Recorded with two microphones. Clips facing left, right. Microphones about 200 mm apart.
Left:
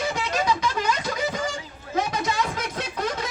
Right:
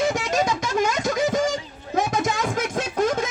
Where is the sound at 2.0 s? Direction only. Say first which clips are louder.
Right 2 dB; 45° right (ahead or behind).